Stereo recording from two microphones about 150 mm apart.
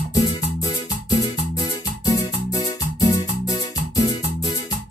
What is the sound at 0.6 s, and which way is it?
Music, 25° left (ahead or behind).